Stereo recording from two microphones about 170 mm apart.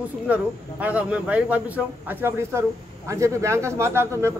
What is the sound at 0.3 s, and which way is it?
Speech, 10° right (ahead or behind).